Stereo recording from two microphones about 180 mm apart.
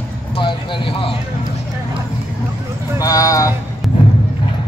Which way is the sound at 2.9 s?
20° left (ahead or behind).